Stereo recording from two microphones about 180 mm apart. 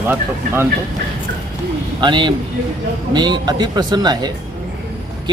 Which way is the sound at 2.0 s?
25° right (ahead or behind).